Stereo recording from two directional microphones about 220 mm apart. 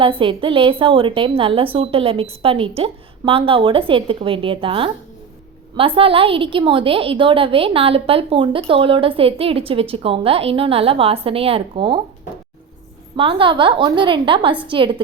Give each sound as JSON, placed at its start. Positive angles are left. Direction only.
{"t": 0.0, "sound": "a woman's voice", "side_deg": -25}
{"t": 13.1, "sound": "a woman's voice", "side_deg": -25}